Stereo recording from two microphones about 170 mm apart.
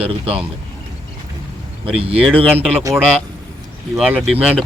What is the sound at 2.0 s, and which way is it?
Speech, 35° right (ahead or behind).